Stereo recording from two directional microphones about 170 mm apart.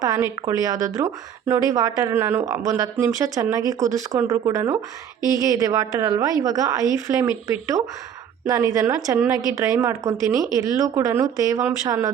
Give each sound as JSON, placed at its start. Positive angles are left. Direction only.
{"t": 0.0, "sound": "speech", "side_deg": -20}